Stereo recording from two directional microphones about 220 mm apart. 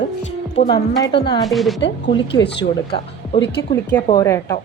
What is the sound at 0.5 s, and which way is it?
Speech, 30° left (ahead or behind).